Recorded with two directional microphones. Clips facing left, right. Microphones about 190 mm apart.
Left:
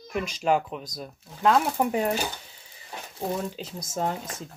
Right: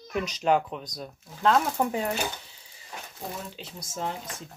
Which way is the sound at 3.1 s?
40° left (ahead or behind).